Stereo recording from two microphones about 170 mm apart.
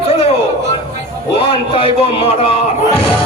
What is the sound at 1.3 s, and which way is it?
Speech, 35° left (ahead or behind).